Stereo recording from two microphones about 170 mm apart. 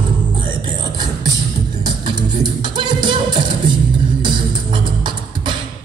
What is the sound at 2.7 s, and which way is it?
Music, 25° right (ahead or behind).